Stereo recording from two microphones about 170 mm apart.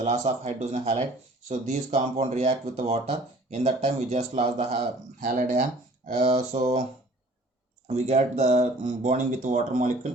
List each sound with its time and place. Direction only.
0.0 s speech: 40° right (ahead or behind)
5.2 s speech: 50° right (ahead or behind)
6.2 s speech: 40° right (ahead or behind)
7.9 s speech: 40° right (ahead or behind)